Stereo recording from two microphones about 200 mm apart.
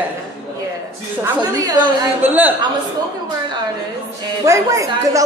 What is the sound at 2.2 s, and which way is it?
Speech, 10° right (ahead or behind).